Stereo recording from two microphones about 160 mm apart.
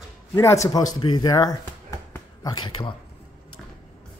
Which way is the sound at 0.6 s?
25° left (ahead or behind).